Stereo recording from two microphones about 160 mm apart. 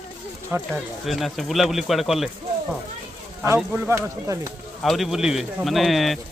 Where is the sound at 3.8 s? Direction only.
20° right (ahead or behind).